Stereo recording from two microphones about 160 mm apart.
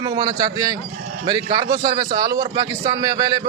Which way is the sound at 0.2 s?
25° right (ahead or behind).